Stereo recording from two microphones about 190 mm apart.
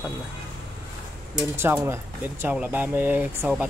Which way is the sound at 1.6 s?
10° right (ahead or behind).